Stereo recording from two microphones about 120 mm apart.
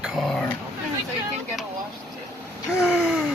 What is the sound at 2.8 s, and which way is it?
Gasp, 5° right (ahead or behind).